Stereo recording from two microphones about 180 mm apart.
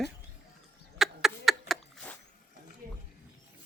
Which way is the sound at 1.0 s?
Centre (ahead or behind).